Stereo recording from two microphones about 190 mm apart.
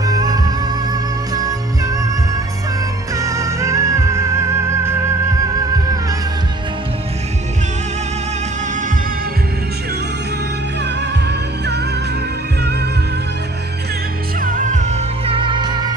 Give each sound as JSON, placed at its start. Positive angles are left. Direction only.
{"t": 0.0, "sound": "music", "side_deg": -20}
{"t": 3.2, "sound": "music", "side_deg": -15}
{"t": 10.8, "sound": "music", "side_deg": -65}
{"t": 14.4, "sound": "music", "side_deg": -45}